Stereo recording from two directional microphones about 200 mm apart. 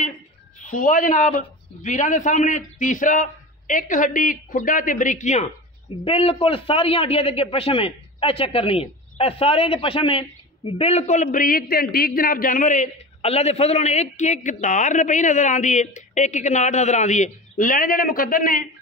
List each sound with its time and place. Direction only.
0.7 s a man's voice: 40° left (ahead or behind)